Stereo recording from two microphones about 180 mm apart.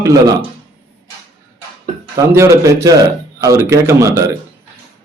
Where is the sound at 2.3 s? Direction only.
15° right (ahead or behind).